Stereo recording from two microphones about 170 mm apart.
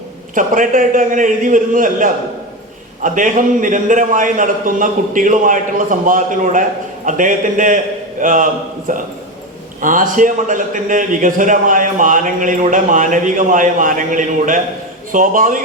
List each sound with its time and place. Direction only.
0.3 s a man's voice: 50° right (ahead or behind)